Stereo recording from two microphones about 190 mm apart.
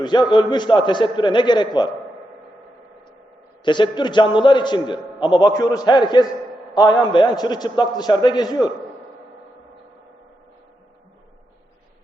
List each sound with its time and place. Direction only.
0.0 s a man's voice: 25° left (ahead or behind)
3.6 s a man's voice: 25° left (ahead or behind)